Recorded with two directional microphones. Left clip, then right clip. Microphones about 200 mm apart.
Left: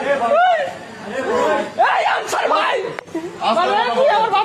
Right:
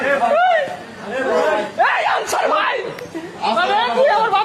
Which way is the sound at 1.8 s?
15° left (ahead or behind).